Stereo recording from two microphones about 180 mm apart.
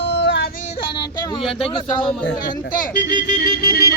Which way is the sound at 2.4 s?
50° left (ahead or behind).